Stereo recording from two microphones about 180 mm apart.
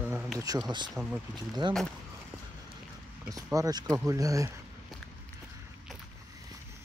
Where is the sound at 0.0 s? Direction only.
5° right (ahead or behind).